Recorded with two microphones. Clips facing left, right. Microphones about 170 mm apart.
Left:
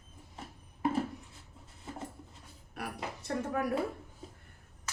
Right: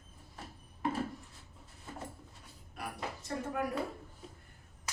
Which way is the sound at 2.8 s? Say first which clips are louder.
Left 2 dB; 70° left (ahead or behind).